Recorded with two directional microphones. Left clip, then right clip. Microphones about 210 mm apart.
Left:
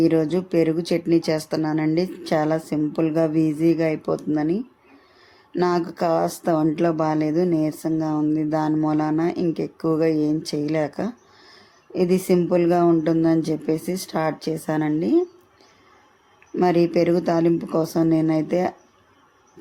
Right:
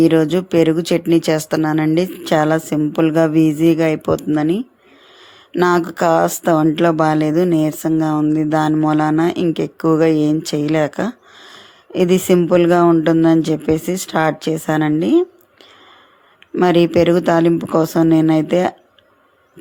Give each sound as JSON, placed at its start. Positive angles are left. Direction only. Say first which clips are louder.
{"t": 0.0, "sound": "speech", "louder": "right 6 dB", "side_deg": -20}
{"t": 16.6, "sound": "speech", "louder": "right 6 dB", "side_deg": -20}